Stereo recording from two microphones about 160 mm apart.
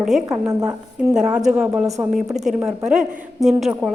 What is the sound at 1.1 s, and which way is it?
A woman's voice, 5° right (ahead or behind).